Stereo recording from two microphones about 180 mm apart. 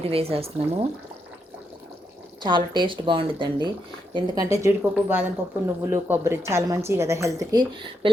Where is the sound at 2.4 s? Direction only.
25° right (ahead or behind).